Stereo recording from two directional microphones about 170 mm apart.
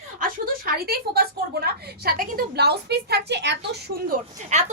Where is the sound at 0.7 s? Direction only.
65° right (ahead or behind); by 3.6 s 90° right.